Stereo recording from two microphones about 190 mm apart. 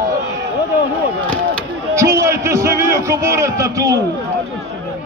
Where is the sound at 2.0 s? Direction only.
15° right (ahead or behind).